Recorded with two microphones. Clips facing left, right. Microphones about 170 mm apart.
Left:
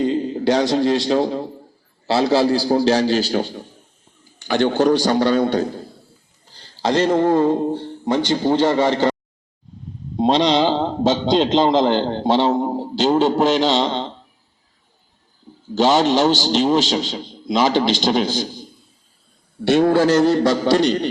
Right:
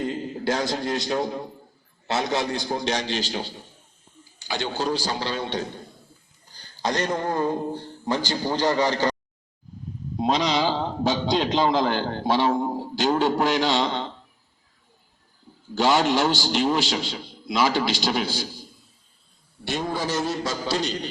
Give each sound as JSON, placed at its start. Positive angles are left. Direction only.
{"t": 0.3, "sound": "a sound", "side_deg": 25}
{"t": 0.6, "sound": "a man's voice", "side_deg": 25}
{"t": 4.4, "sound": "a man's voice", "side_deg": 60}
{"t": 5.4, "sound": "a man's voice", "side_deg": 35}
{"t": 10.2, "sound": "a man's voice", "side_deg": 30}
{"t": 15.7, "sound": "a man's voice", "side_deg": 20}
{"t": 18.3, "sound": "a man's voice", "side_deg": -10}
{"t": 19.6, "sound": "a man's voice", "side_deg": 70}